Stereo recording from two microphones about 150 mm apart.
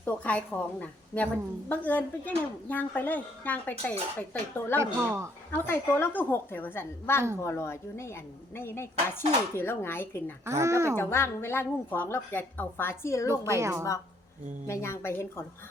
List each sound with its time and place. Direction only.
0.0 s a woman's voice: 10° left (ahead or behind)
4.8 s speech: 20° right (ahead or behind)
5.5 s a woman's voice: 15° left (ahead or behind)
10.4 s speech: 20° right (ahead or behind)
10.9 s a woman's voice: 15° left (ahead or behind)
13.6 s speech: 20° right (ahead or behind)
14.7 s a woman's voice: 20° left (ahead or behind)